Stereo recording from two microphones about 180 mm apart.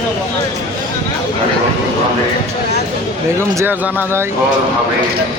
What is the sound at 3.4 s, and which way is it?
Speech, 15° right (ahead or behind).